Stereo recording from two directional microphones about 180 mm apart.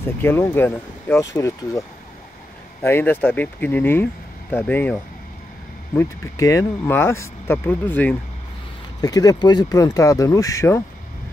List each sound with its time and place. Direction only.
0.0 s speech: 10° left (ahead or behind)
9.0 s speech: 20° left (ahead or behind)